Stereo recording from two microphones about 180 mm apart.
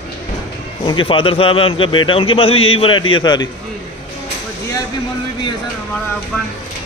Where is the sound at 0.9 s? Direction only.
30° left (ahead or behind).